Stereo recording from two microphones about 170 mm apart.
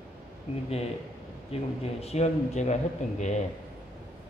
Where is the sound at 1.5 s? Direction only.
35° left (ahead or behind).